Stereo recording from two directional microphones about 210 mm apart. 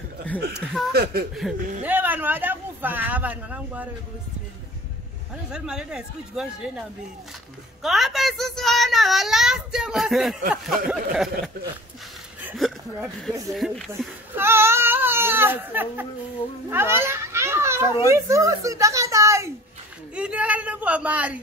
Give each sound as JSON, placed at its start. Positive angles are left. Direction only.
{"t": 0.9, "sound": "speech", "side_deg": -45}
{"t": 1.3, "sound": "speech", "side_deg": -5}
{"t": 5.5, "sound": "speech", "side_deg": -5}
{"t": 7.8, "sound": "a child's voice", "side_deg": 0}
{"t": 12.4, "sound": "a sound", "side_deg": 0}
{"t": 13.5, "sound": "speech", "side_deg": 0}
{"t": 14.3, "sound": "speech", "side_deg": -10}
{"t": 16.7, "sound": "children playing", "side_deg": -10}
{"t": 18.0, "sound": "a woman's voice", "side_deg": -15}